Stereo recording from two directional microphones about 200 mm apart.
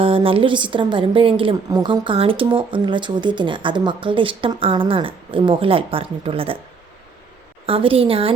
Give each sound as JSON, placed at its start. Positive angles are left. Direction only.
{"t": 0.0, "sound": "a woman's voice", "side_deg": -25}
{"t": 7.7, "sound": "a woman's voice", "side_deg": -25}